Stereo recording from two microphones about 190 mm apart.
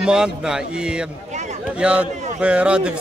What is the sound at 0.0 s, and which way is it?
Speech, 5° right (ahead or behind).